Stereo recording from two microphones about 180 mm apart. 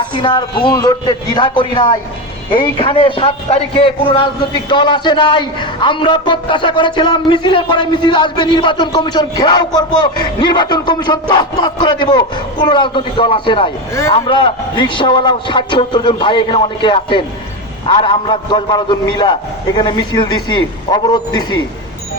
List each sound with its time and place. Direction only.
0.0 s a man's voice: 25° left (ahead or behind)